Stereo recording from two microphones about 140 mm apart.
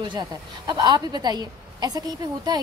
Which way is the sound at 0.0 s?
30° right (ahead or behind).